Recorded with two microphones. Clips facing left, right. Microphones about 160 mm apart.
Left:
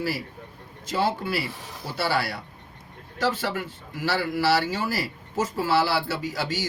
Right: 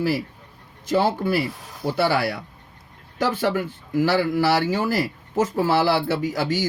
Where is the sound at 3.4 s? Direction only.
50° right (ahead or behind).